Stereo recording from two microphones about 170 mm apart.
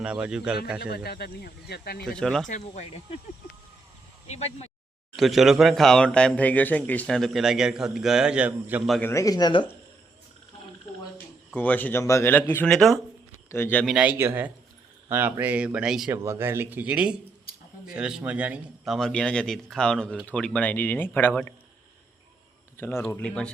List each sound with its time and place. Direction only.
0.0 s a man's voice: 5° right (ahead or behind)
0.8 s speech: 65° left (ahead or behind)
2.0 s a man's voice: 5° left (ahead or behind)
4.3 s speech: 40° left (ahead or behind)
5.1 s a man's voice: centre (ahead or behind)
8.9 s speech: 10° left (ahead or behind)
11.5 s speech: 10° left (ahead or behind)
13.8 s speech: 5° right (ahead or behind)
16.1 s a man's voice: 15° right (ahead or behind); by 21.5 s 10° left (ahead or behind)
22.8 s speech: 15° left (ahead or behind)